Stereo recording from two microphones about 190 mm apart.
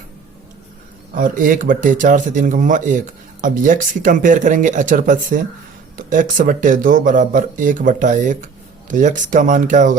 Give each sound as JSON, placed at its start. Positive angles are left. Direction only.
{"t": 1.1, "sound": "speech", "side_deg": -45}